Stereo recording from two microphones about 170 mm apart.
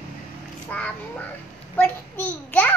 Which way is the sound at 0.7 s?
10° left (ahead or behind).